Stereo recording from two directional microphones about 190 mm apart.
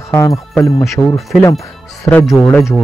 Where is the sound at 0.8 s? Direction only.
Centre (ahead or behind).